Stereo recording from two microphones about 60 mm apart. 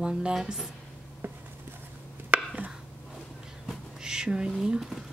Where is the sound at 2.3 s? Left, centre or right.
Right.